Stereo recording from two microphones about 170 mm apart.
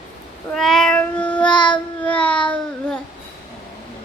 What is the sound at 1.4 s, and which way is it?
Child singing, 30° left (ahead or behind).